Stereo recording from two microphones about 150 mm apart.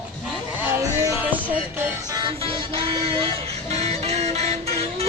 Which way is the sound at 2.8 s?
35° right (ahead or behind).